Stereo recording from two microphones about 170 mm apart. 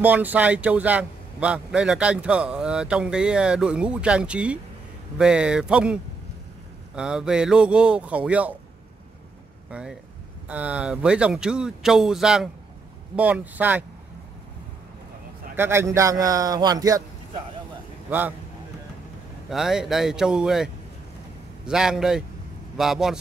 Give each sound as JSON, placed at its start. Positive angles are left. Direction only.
{"t": 0.0, "sound": "a man's voice", "side_deg": -10}
{"t": 7.0, "sound": "a man's voice", "side_deg": -5}
{"t": 9.7, "sound": "a man's voice", "side_deg": -5}
{"t": 15.5, "sound": "a man's voice", "side_deg": -15}
{"t": 19.5, "sound": "speech", "side_deg": -5}